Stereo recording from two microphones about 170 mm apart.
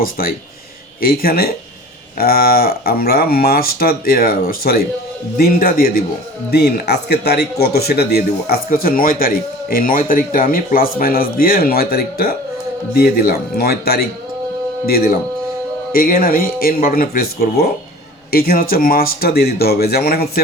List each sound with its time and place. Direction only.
0.2 s speech: 60° left (ahead or behind)
6.5 s speech: 70° left (ahead or behind)